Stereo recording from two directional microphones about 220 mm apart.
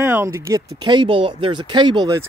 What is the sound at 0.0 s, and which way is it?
Speech, 10° right (ahead or behind).